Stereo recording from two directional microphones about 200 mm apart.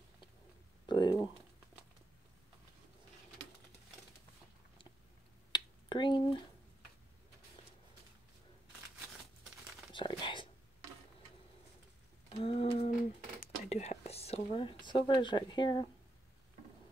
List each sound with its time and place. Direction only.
0.8 s speech: 20° left (ahead or behind)
5.5 s finger snapping: 25° left (ahead or behind)
9.9 s whispering: 25° left (ahead or behind)
12.3 s a sound: 30° left (ahead or behind)
13.7 s speech: 30° left (ahead or behind)